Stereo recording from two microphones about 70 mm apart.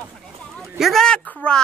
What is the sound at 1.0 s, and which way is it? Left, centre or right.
Speech, centre.